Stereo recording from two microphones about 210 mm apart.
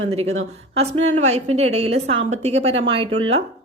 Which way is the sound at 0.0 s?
30° right (ahead or behind).